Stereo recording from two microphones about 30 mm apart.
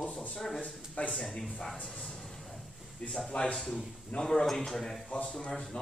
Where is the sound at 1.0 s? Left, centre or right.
Left.